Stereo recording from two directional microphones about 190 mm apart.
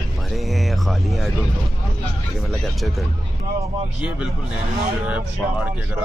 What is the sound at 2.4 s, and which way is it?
Speech, centre (ahead or behind).